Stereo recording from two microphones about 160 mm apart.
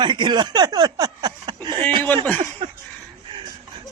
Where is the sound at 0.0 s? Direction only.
30° right (ahead or behind).